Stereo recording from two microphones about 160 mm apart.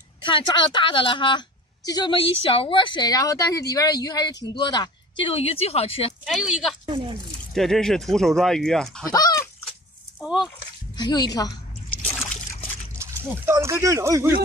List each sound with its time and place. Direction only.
0.2 s a woman's voice: 30° left (ahead or behind)
6.2 s speech: centre (ahead or behind)
6.9 s speech: 30° right (ahead or behind)
7.5 s speech: centre (ahead or behind)
9.1 s goose: 25° left (ahead or behind)
10.2 s speech: 5° right (ahead or behind)
11.0 s speech: 25° left (ahead or behind)
11.9 s a sound: 10° left (ahead or behind)
13.0 s a sound: 20° right (ahead or behind)
13.5 s speech: 15° right (ahead or behind)